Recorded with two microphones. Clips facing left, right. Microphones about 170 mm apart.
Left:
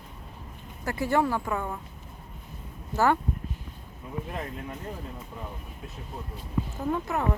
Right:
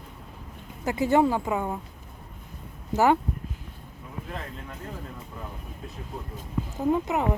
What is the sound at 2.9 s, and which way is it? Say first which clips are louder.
Speech: right 3 dB; 15° right (ahead or behind).